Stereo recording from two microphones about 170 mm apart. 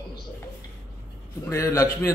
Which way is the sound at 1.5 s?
15° left (ahead or behind).